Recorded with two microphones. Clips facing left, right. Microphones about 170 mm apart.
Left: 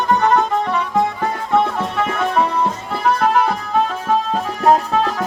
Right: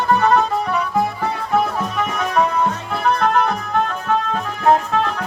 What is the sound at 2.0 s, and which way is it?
Music, centre (ahead or behind).